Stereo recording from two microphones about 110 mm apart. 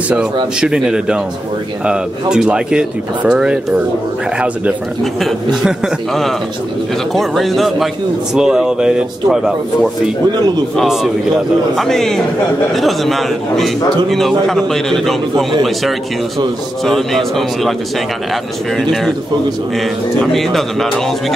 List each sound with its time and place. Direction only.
0.6 s speech: 5° right (ahead or behind)
5.2 s a man's voice: 5° right (ahead or behind)
10.3 s a man's voice: 40° right (ahead or behind)
10.8 s a man's voice: centre (ahead or behind)
16.8 s a man's voice: centre (ahead or behind)
18.8 s a man's voice: 5° left (ahead or behind)
20.3 s a man's voice: centre (ahead or behind)